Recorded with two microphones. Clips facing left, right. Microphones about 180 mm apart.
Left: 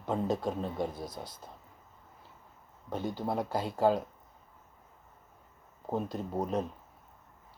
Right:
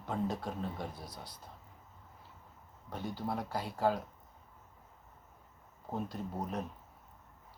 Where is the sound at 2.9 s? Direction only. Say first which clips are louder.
Left 5 dB; 20° left (ahead or behind).